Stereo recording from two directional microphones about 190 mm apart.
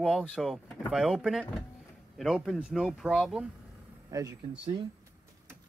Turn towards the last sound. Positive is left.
turn(degrees=-25)  # may be behind; listen again after turning